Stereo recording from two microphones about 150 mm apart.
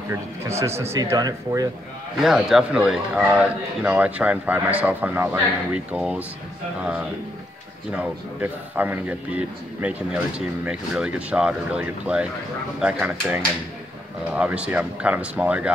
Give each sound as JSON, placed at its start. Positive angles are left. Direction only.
{"t": 0.1, "sound": "speech", "side_deg": -15}
{"t": 2.2, "sound": "speech", "side_deg": -5}